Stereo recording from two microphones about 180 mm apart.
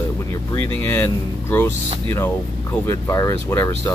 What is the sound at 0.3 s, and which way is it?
Speech, 10° left (ahead or behind).